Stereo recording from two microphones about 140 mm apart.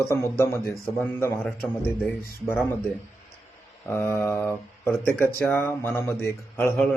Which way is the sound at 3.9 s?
20° left (ahead or behind).